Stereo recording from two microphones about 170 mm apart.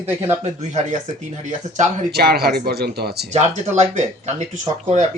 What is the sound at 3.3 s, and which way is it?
Speech, 40° right (ahead or behind).